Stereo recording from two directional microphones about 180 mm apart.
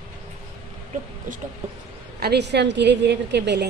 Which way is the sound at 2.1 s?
65° right (ahead or behind).